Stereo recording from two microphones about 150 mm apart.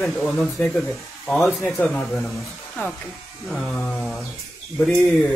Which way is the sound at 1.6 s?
20° left (ahead or behind).